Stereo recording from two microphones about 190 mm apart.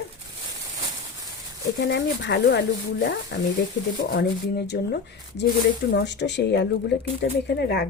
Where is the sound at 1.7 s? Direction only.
65° left (ahead or behind).